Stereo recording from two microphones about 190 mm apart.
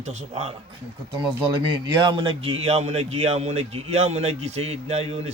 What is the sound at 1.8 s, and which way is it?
A man's voice, 20° right (ahead or behind).